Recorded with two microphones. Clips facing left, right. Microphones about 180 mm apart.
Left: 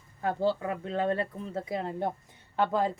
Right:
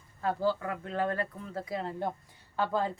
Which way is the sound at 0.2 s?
20° left (ahead or behind).